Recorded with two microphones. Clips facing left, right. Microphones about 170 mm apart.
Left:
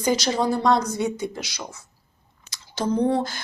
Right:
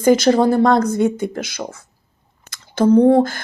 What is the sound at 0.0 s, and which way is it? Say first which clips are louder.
Speech: right 9 dB; 55° right (ahead or behind).